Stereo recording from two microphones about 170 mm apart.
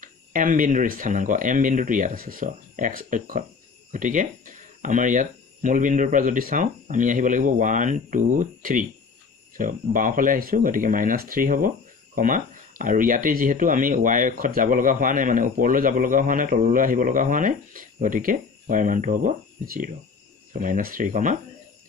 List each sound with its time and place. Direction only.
0.0 s speech: 55° right (ahead or behind)